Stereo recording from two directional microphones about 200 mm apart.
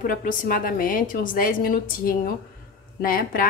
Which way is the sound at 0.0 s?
45° left (ahead or behind).